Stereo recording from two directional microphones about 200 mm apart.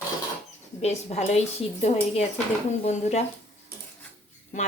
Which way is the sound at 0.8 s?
35° left (ahead or behind).